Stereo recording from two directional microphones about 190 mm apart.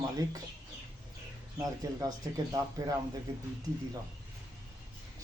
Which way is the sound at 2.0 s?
20° right (ahead or behind).